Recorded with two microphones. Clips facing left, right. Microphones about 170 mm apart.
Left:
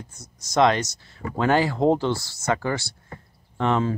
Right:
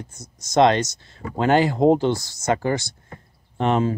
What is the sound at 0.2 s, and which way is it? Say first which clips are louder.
Speech: right 3 dB; 20° right (ahead or behind).